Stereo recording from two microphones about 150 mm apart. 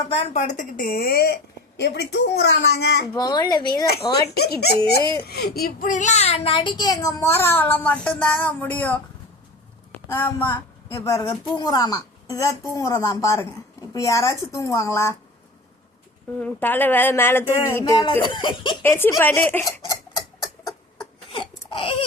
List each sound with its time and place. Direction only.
0.1 s a woman's voice: 40° left (ahead or behind); by 3.0 s 90° left
3.1 s a child's voice: 25° left (ahead or behind)
4.3 s a child's voice: 90° left; by 9.0 s 10° left (ahead or behind)
10.1 s a child's voice: 15° left (ahead or behind)
16.4 s speech: 10° left (ahead or behind); by 18.8 s 30° left (ahead or behind)
18.8 s speech: 15° left (ahead or behind)
21.0 s a sound: 35° left (ahead or behind)